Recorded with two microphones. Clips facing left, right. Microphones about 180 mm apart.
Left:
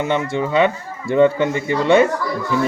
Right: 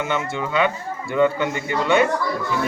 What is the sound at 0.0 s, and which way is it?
Speech, 30° left (ahead or behind).